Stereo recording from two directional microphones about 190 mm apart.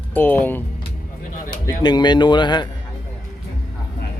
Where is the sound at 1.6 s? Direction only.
20° left (ahead or behind).